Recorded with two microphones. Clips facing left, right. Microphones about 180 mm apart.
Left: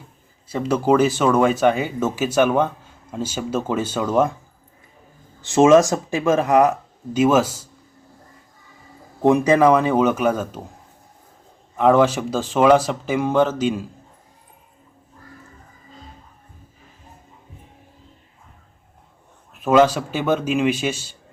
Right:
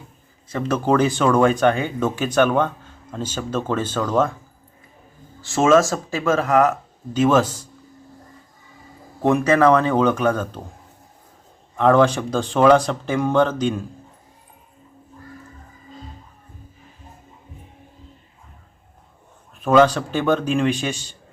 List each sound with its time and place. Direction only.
0.4 s speech: 10° left (ahead or behind)
5.4 s speech: 20° left (ahead or behind)
9.2 s speech: 15° left (ahead or behind)
11.8 s speech: 10° left (ahead or behind)
19.6 s speech: 10° left (ahead or behind)